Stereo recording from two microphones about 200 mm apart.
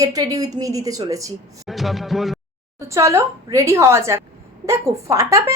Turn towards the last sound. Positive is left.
turn(degrees=-15)  # may be behind; listen again after turning